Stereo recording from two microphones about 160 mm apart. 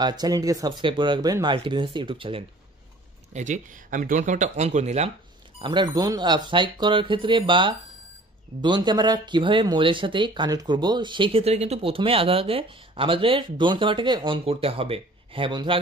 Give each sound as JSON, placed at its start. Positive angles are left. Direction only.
{"t": 0.0, "sound": "speech", "side_deg": -25}
{"t": 3.3, "sound": "speech", "side_deg": -50}
{"t": 5.6, "sound": "speech", "side_deg": -30}